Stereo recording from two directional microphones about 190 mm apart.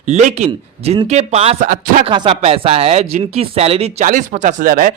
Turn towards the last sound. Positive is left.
turn(degrees=-50)  # may be behind; listen again after turning